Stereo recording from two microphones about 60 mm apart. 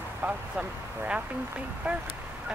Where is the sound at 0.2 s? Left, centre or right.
Right.